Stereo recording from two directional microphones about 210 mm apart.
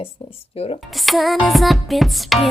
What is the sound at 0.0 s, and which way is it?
Speech, 25° left (ahead or behind).